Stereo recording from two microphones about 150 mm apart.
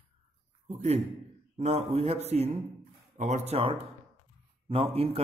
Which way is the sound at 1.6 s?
45° right (ahead or behind).